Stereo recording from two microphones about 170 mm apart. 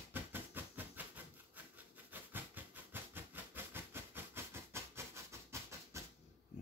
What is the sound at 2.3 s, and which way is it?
Train, 10° right (ahead or behind).